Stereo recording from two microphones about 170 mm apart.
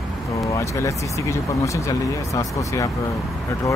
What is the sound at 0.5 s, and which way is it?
Speech, 20° left (ahead or behind).